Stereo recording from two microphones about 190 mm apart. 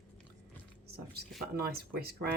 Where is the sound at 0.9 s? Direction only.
55° right (ahead or behind).